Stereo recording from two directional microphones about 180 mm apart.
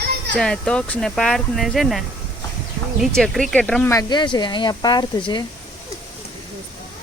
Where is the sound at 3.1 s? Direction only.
Centre (ahead or behind).